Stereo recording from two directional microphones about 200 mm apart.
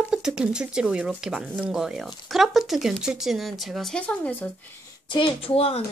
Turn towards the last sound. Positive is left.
turn(degrees=30)  # may be behind; listen again after turning